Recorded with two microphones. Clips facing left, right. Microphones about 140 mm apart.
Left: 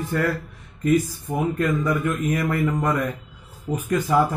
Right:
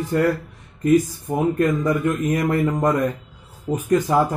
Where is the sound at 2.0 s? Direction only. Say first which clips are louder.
Right 3 dB; 40° right (ahead or behind).